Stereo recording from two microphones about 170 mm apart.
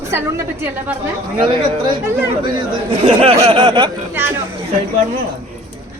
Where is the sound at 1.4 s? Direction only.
30° right (ahead or behind).